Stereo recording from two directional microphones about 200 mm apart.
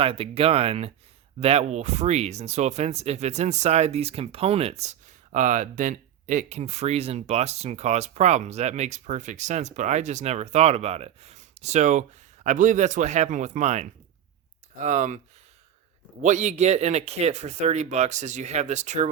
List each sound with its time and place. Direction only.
0.0 s speech: 30° right (ahead or behind)
16.2 s speech: 35° right (ahead or behind)